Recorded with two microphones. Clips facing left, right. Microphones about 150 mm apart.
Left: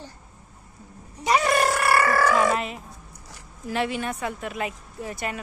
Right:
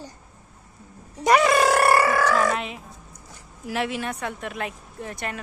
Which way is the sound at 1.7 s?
55° right (ahead or behind).